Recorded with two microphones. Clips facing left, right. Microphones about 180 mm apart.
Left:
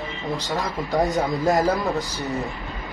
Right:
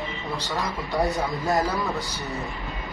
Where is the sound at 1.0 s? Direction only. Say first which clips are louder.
Left 4 dB; 20° left (ahead or behind).